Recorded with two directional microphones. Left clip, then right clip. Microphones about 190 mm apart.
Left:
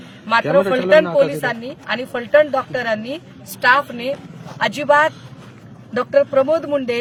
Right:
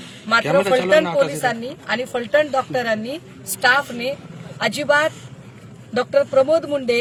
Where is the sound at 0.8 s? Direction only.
40° left (ahead or behind).